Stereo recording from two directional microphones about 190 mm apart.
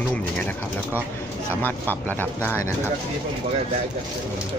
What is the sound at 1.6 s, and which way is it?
Speech, 10° left (ahead or behind).